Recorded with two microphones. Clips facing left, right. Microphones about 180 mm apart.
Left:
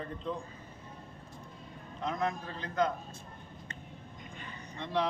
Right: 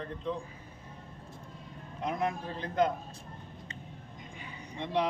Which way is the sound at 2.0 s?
10° right (ahead or behind).